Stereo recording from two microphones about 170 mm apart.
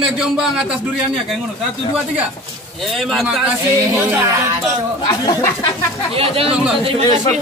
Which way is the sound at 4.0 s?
15° right (ahead or behind).